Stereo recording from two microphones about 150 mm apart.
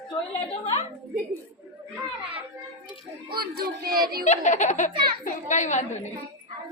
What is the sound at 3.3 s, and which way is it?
Child singing, 90° right.